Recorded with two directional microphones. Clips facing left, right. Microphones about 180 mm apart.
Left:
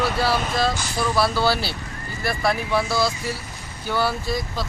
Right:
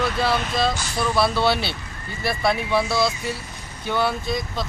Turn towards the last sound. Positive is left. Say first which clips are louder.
# even
turn(degrees=5)  # may be behind; listen again after turning